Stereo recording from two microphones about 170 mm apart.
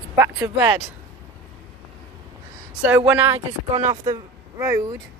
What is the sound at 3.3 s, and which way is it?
Speech, 35° right (ahead or behind).